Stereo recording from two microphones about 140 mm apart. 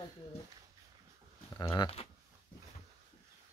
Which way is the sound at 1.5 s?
25° left (ahead or behind).